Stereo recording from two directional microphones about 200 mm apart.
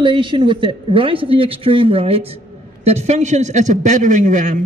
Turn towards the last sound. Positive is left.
turn(degrees=-40)  # may be behind; listen again after turning